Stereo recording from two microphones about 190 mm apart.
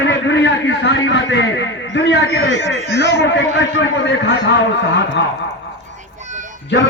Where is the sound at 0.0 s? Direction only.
70° left (ahead or behind).